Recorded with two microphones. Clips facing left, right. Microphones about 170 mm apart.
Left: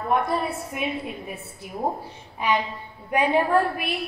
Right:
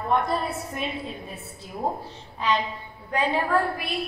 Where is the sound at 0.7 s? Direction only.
15° left (ahead or behind).